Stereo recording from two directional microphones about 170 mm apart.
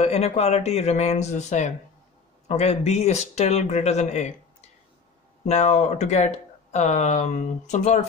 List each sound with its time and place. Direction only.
0.0 s speech: 40° left (ahead or behind)
5.5 s speech: 40° left (ahead or behind)